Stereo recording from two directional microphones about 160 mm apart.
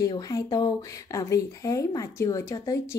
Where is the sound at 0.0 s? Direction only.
20° left (ahead or behind).